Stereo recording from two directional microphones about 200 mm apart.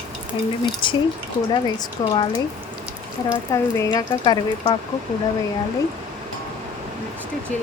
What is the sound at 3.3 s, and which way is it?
Speech, 15° left (ahead or behind).